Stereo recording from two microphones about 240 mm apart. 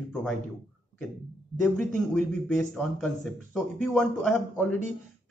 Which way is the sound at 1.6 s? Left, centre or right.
Centre.